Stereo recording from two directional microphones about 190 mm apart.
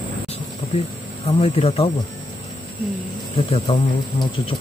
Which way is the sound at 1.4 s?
30° left (ahead or behind).